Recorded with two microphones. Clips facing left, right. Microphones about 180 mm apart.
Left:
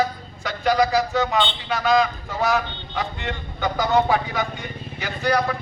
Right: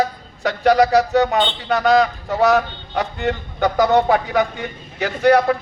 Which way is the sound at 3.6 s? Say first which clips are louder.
Right 5 dB; 70° right (ahead or behind).